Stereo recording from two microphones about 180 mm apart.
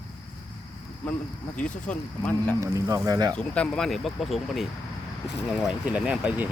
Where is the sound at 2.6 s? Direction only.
20° right (ahead or behind).